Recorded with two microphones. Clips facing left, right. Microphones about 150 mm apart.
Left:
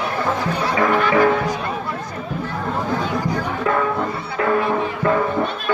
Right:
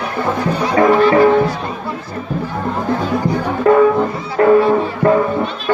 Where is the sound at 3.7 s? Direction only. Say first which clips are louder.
Right 11 dB; 40° right (ahead or behind).